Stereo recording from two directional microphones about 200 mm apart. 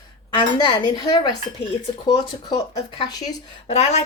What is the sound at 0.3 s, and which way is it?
Speech, 20° left (ahead or behind).